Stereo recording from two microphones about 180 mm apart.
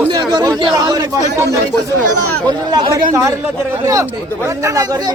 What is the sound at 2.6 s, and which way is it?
Speech, 20° right (ahead or behind).